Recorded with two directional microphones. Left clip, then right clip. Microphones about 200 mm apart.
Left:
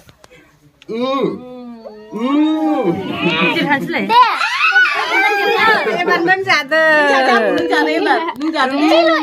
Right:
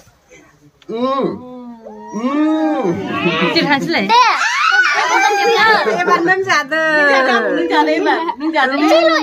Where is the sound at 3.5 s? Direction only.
35° right (ahead or behind).